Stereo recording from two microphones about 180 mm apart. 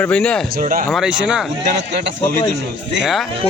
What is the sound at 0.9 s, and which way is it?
Speech, 5° right (ahead or behind).